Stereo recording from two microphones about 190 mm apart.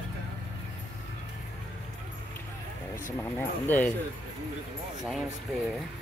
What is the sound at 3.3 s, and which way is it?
Speech, 10° left (ahead or behind).